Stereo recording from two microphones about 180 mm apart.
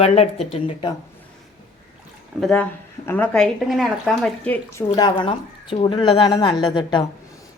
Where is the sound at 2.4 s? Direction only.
5° left (ahead or behind).